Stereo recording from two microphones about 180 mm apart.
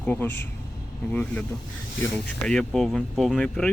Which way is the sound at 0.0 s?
10° left (ahead or behind).